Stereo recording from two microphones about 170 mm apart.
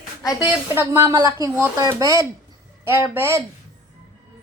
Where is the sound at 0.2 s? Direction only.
20° left (ahead or behind).